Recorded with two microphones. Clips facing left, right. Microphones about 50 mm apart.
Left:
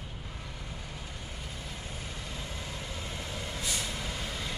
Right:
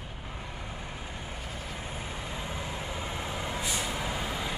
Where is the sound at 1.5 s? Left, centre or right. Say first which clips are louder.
Right 4 dB; right.